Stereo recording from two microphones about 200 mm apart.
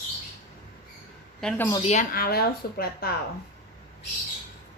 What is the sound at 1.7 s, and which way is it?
Speech, 30° left (ahead or behind).